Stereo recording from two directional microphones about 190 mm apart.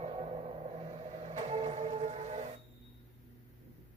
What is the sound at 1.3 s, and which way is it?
Music, 35° right (ahead or behind).